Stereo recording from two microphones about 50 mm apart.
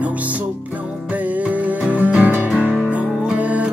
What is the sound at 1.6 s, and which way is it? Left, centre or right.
Music, right.